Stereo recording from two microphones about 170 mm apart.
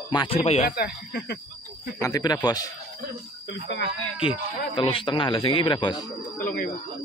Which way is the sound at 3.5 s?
90° left.